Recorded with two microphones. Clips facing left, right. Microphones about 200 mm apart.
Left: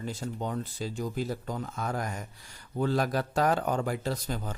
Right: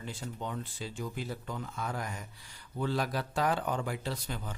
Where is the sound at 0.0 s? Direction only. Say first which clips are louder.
Left 5 dB; 40° left (ahead or behind).